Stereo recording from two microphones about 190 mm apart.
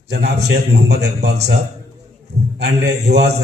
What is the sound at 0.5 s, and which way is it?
Speech, 60° right (ahead or behind).